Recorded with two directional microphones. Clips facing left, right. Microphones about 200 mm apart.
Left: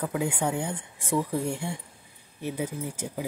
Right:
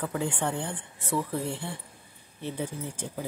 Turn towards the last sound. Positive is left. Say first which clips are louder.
# left 2 dB
turn(degrees=10)  # may be behind; listen again after turning